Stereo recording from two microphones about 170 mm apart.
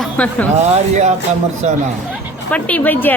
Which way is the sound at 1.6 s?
40° right (ahead or behind).